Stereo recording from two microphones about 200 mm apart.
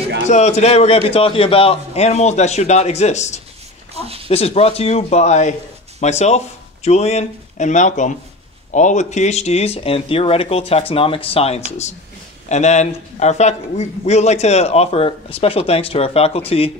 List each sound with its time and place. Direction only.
0.3 s a man's voice: 35° left (ahead or behind)
3.9 s speech: 30° right (ahead or behind)
4.3 s a man's voice: 30° left (ahead or behind)